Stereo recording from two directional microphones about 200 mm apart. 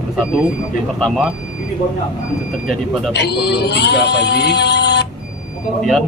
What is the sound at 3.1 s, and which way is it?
Speech, 55° left (ahead or behind).